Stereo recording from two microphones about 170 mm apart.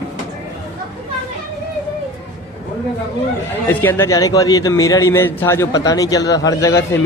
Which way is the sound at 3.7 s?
10° left (ahead or behind).